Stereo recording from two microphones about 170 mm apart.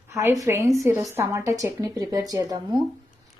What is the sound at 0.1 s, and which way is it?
A woman's voice, 15° right (ahead or behind).